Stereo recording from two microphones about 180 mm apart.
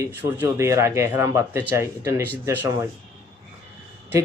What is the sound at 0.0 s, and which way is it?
Speech, 10° right (ahead or behind).